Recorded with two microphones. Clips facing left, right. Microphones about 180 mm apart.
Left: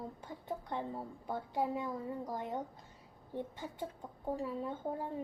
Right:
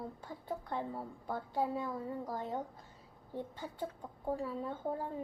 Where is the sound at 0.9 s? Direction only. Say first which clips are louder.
Even; 15° left (ahead or behind).